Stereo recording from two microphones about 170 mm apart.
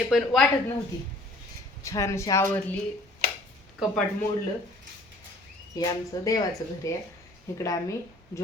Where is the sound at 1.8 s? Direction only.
15° left (ahead or behind).